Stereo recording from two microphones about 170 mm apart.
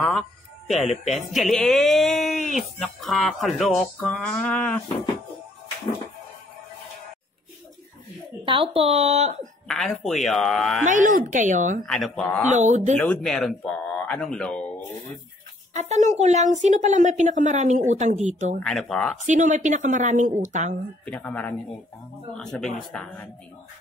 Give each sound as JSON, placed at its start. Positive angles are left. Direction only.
{"t": 0.0, "sound": "speech", "side_deg": 5}
{"t": 8.5, "sound": "speech", "side_deg": -30}
{"t": 9.7, "sound": "speech", "side_deg": 0}
{"t": 10.9, "sound": "a woman's voice", "side_deg": -50}
{"t": 11.8, "sound": "speech", "side_deg": 5}
{"t": 12.4, "sound": "a woman's voice", "side_deg": -45}
{"t": 13.0, "sound": "speech", "side_deg": 5}
{"t": 15.7, "sound": "a woman's voice", "side_deg": -40}
{"t": 18.6, "sound": "speech", "side_deg": 5}
{"t": 19.2, "sound": "a woman's voice", "side_deg": -45}
{"t": 21.0, "sound": "speech", "side_deg": 10}